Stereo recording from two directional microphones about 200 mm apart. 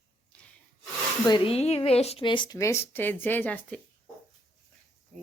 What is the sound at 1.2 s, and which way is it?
Speech, 25° left (ahead or behind).